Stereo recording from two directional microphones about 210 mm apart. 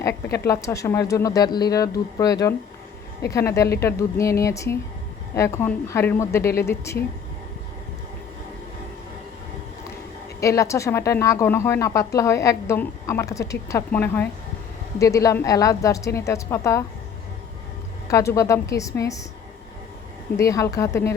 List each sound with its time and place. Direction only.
0.4 s a woman's voice: 15° left (ahead or behind)
10.4 s a woman's voice: 15° left (ahead or behind)
18.1 s a woman's voice: 15° left (ahead or behind)
20.3 s a woman's voice: 15° left (ahead or behind)